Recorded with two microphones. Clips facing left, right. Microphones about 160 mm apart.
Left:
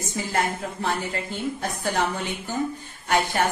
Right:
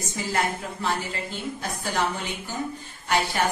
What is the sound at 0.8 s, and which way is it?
A woman's voice, 50° left (ahead or behind).